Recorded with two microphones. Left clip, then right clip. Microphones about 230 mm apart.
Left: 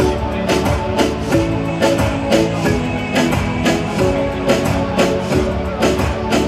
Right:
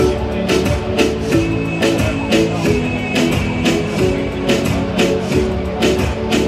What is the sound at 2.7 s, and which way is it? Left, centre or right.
Music, centre.